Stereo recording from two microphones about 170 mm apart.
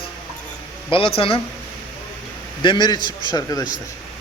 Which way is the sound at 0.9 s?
30° left (ahead or behind).